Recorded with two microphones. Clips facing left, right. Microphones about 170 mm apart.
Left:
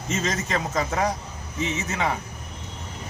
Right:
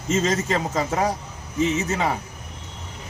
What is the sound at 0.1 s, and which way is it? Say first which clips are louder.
A man's voice: right 5 dB; 30° right (ahead or behind).